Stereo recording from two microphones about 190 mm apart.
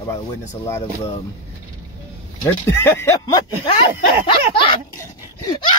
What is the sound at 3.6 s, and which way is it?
Speech, 25° left (ahead or behind).